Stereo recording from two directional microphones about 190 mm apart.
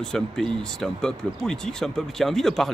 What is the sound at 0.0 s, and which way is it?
Speech, centre (ahead or behind).